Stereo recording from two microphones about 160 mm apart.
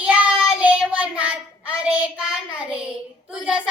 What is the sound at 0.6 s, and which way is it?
Child singing, 10° right (ahead or behind).